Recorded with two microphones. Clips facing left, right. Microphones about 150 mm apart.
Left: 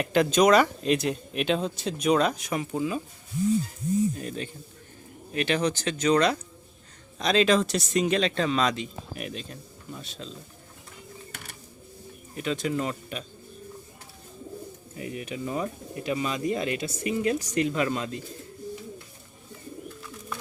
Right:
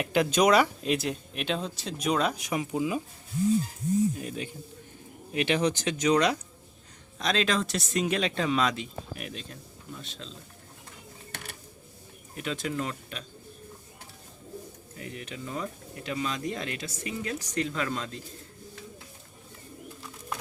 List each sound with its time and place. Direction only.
0.0 s speech: 10° right (ahead or behind)
2.3 s speech: 15° right (ahead or behind)
4.2 s speech: 10° right (ahead or behind)
7.2 s speech: centre (ahead or behind)
12.4 s speech: centre (ahead or behind)
14.9 s speech: 10° left (ahead or behind)